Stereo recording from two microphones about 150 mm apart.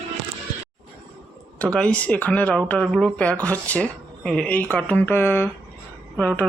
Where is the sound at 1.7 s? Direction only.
10° left (ahead or behind).